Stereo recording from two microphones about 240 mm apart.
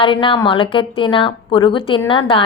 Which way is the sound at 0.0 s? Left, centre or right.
Left.